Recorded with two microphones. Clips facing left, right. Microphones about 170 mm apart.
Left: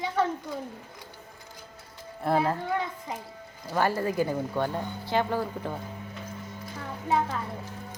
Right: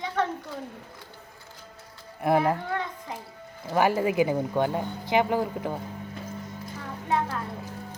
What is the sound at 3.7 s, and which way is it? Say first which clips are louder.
Speech: right 3 dB; 15° right (ahead or behind).